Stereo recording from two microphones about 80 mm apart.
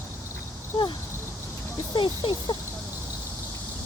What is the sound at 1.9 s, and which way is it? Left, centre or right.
Speech, left.